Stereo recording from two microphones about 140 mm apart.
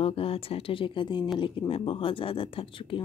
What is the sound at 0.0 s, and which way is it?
Speech, 40° left (ahead or behind).